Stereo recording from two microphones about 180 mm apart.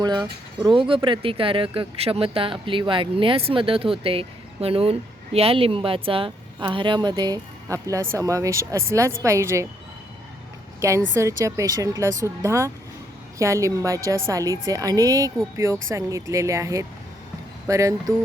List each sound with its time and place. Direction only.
0.0 s speech: 25° right (ahead or behind)
10.8 s speech: 15° right (ahead or behind)